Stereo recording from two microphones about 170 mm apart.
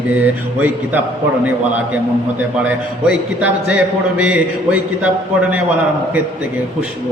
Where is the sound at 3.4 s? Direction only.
5° right (ahead or behind).